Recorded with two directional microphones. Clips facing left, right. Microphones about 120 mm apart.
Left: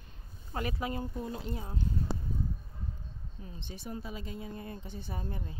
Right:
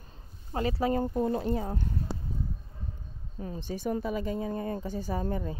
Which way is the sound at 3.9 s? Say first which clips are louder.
Right 10 dB; 55° right (ahead or behind).